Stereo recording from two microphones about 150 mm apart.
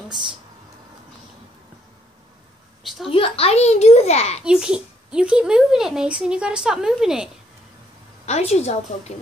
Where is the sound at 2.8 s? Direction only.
Centre (ahead or behind).